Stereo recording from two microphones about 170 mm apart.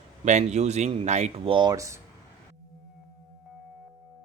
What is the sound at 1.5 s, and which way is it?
Speech, 20° right (ahead or behind).